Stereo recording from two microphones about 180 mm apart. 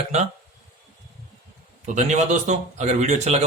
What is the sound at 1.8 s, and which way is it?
Speech, 40° right (ahead or behind).